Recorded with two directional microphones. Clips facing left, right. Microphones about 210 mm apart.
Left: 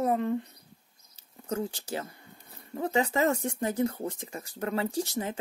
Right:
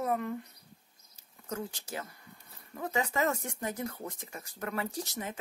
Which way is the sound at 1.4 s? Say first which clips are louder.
Left 6 dB; 30° left (ahead or behind).